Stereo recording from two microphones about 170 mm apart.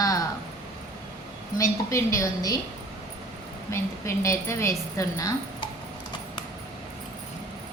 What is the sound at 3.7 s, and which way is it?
A woman's voice, 15° left (ahead or behind).